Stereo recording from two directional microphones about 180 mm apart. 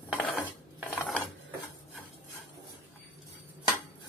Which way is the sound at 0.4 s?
5° right (ahead or behind).